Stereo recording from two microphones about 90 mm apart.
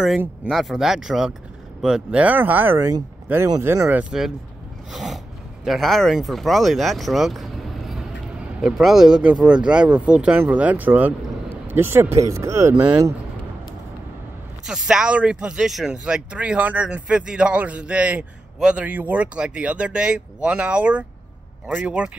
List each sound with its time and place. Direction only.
0.5 s speech: centre (ahead or behind); by 3.9 s 30° right (ahead or behind)
4.1 s speech: 10° right (ahead or behind)
4.9 s a sound: centre (ahead or behind)
5.7 s speech: centre (ahead or behind)
8.5 s speech: 5° right (ahead or behind); by 13.1 s 40° right (ahead or behind)
14.7 s speech: 10° right (ahead or behind)